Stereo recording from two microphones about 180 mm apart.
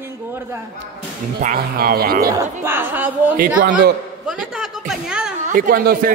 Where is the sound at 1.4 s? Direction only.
50° right (ahead or behind).